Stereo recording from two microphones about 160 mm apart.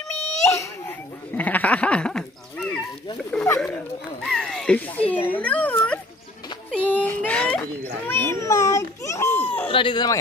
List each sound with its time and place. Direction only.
0.5 s laughter: 15° left (ahead or behind)
3.3 s a sound: 10° left (ahead or behind)
4.2 s speech: 5° left (ahead or behind)
6.7 s a sound: 10° left (ahead or behind)
8.1 s children playing: 15° left (ahead or behind)
9.7 s speech: 30° left (ahead or behind)